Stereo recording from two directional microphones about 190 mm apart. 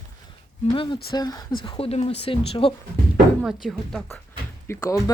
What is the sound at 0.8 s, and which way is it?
Speech, 25° left (ahead or behind).